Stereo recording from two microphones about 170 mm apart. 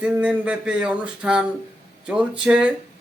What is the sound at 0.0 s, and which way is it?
Speech, 5° right (ahead or behind).